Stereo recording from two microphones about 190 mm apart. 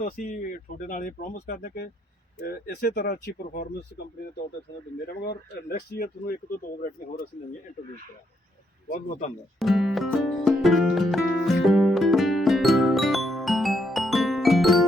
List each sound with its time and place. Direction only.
0.0 s speech: 45° left (ahead or behind)
5.0 s speech: 55° left (ahead or behind)
8.9 s speech: 40° left (ahead or behind)
9.6 s music: centre (ahead or behind)